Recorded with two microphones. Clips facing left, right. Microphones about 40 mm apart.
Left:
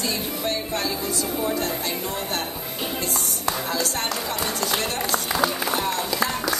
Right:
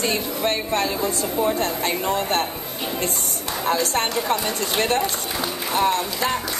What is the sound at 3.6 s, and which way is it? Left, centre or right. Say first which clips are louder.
A woman's voice: right 4 dB; right.